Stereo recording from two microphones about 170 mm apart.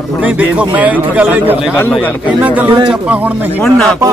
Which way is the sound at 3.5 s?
5° left (ahead or behind).